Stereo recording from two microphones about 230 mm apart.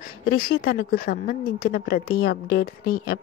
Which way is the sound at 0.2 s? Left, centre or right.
Left.